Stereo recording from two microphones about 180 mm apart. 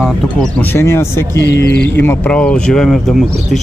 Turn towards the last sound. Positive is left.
turn(degrees=0)  # may be behind; listen again after turning